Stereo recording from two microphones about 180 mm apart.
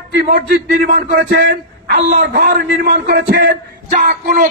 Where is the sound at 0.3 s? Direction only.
55° right (ahead or behind).